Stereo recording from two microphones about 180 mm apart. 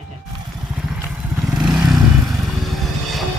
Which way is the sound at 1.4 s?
5° right (ahead or behind).